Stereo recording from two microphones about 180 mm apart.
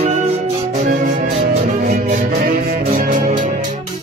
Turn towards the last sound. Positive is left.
turn(degrees=-45)  # may be behind; listen again after turning